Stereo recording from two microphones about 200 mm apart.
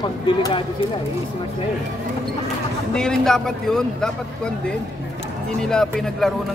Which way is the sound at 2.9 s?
5° left (ahead or behind).